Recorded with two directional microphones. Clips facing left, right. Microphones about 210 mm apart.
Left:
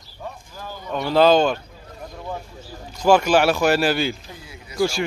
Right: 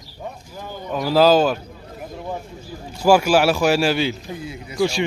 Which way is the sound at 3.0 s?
5° right (ahead or behind).